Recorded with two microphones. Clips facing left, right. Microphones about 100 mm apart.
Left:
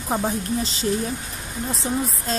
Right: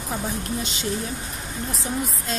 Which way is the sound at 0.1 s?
35° left (ahead or behind).